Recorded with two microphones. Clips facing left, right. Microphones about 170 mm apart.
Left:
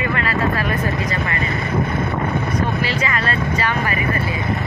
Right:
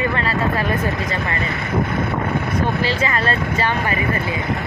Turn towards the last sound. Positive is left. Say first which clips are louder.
# even
turn(degrees=-30)  # may be behind; listen again after turning